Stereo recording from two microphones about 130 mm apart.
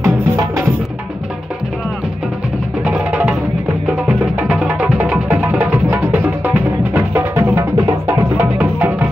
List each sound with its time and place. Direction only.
0.0 s music: 20° right (ahead or behind)
2.8 s music: 10° right (ahead or behind)